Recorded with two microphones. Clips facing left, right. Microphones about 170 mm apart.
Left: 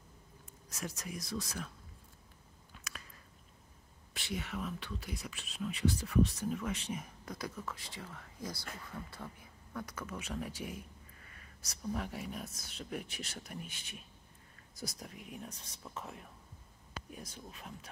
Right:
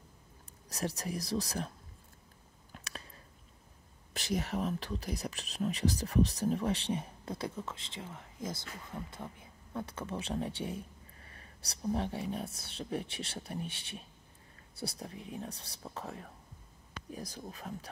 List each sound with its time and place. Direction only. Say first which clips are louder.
0.7 s speech: right 6 dB; 35° right (ahead or behind)
4.1 s speech: right 6 dB; 40° right (ahead or behind)